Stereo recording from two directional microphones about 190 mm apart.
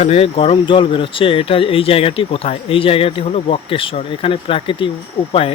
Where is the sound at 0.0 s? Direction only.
30° left (ahead or behind).